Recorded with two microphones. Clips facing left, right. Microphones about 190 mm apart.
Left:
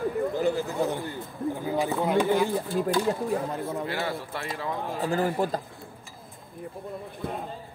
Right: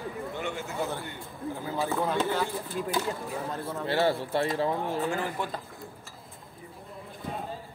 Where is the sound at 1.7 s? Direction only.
15° left (ahead or behind).